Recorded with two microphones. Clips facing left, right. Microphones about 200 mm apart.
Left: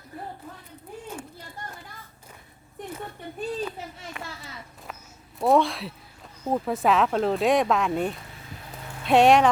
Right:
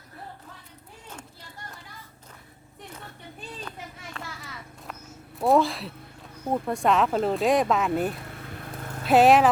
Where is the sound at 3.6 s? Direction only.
10° left (ahead or behind).